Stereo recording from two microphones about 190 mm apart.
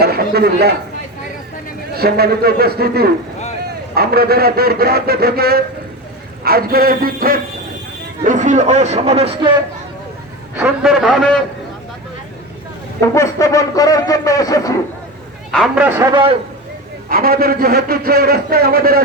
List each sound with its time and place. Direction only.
0.0 s a man's voice: 55° right (ahead or behind)
1.9 s a man's voice: 55° right (ahead or behind); by 9.5 s 30° right (ahead or behind)
10.5 s a man's voice: 5° right (ahead or behind)
13.1 s a man's voice: 15° left (ahead or behind)
15.5 s a man's voice: 5° right (ahead or behind)
17.1 s a man's voice: 55° right (ahead or behind)